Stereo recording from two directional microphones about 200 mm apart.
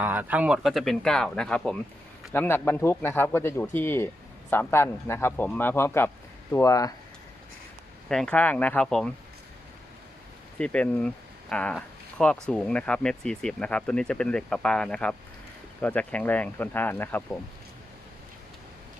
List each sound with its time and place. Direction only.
0.0 s speech: 10° right (ahead or behind); by 6.9 s 15° left (ahead or behind)
8.1 s speech: 5° left (ahead or behind)
10.6 s speech: 5° left (ahead or behind)